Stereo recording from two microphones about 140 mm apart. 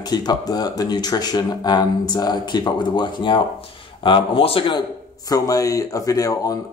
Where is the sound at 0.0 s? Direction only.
30° left (ahead or behind).